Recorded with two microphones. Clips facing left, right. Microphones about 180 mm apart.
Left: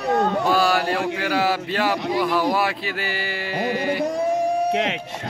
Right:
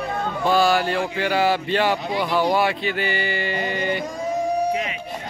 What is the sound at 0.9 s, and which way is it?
Speech, 75° left (ahead or behind).